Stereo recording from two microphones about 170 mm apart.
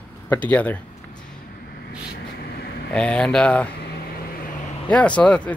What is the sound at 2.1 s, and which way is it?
Vehicle, 65° left (ahead or behind).